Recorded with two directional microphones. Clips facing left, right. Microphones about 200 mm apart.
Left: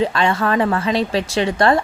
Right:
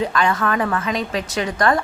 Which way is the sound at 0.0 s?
25° left (ahead or behind).